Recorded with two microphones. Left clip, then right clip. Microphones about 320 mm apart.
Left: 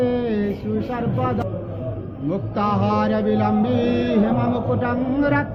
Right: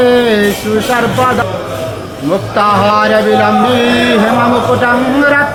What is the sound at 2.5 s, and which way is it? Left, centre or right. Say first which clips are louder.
Music: right 12 dB; right.